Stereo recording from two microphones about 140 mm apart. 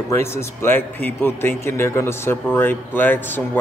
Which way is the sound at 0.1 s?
20° left (ahead or behind).